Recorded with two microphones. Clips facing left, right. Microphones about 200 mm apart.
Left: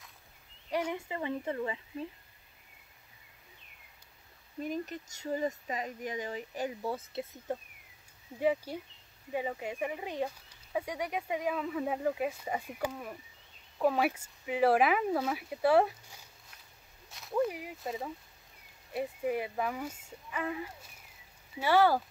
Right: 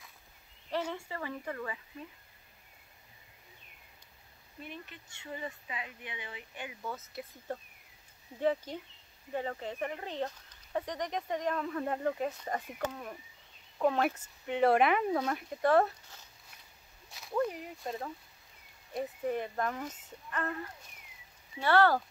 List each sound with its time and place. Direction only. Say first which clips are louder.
0.7 s speech: left 2 dB; 15° left (ahead or behind)
4.6 s speech: left 10 dB; 40° left (ahead or behind)
8.4 s speech: left 1 dB; 10° left (ahead or behind)
17.1 s speech: left 1 dB; centre (ahead or behind)